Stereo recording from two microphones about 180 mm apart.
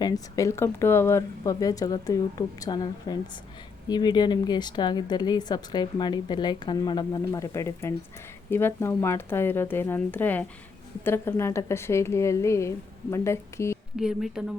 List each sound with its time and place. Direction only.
0.0 s a woman's voice: 15° left (ahead or behind)
13.9 s speech: 5° right (ahead or behind)